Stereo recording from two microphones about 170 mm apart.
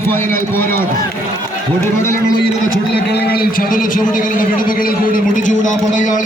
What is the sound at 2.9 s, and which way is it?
A man's voice, 75° left (ahead or behind).